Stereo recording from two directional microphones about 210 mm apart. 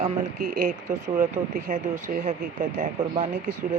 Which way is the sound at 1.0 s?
40° right (ahead or behind).